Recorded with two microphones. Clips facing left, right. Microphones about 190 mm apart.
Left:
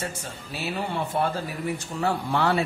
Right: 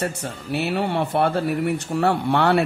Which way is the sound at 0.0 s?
60° right (ahead or behind).